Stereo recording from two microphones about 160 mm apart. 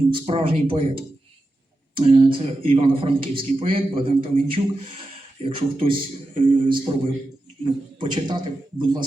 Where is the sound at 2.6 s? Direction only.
35° right (ahead or behind).